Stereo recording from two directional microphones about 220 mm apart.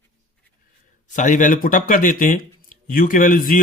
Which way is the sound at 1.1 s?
35° left (ahead or behind).